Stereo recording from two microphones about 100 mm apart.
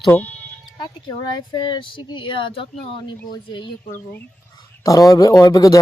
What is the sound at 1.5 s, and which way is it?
Speech, 50° left (ahead or behind).